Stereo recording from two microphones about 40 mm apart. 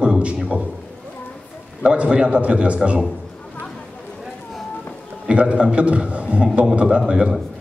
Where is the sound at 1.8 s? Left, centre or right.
Right.